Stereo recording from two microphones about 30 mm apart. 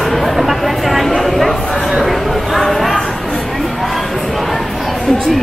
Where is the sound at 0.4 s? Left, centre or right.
Centre.